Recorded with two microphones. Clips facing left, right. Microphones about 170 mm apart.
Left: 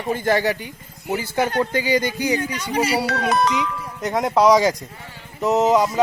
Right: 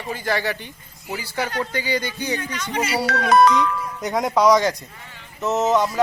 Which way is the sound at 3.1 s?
55° right (ahead or behind).